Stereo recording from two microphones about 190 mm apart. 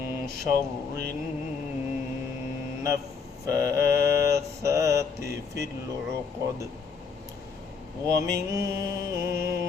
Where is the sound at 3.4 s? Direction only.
15° right (ahead or behind).